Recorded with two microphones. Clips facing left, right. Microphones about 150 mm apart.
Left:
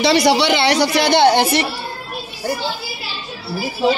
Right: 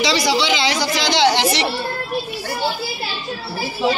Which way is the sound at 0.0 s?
60° left (ahead or behind).